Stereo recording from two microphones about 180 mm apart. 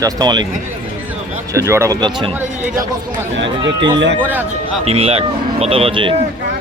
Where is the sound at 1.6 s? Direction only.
15° right (ahead or behind).